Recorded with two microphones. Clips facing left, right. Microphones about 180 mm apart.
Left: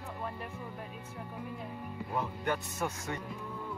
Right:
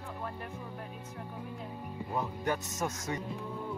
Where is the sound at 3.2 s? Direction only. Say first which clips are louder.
Right 3 dB; 25° right (ahead or behind).